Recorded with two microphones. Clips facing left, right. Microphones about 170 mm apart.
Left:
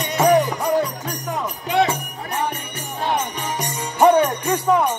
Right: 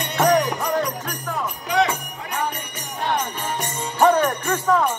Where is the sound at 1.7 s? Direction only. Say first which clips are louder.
Left 2 dB; 30° left (ahead or behind).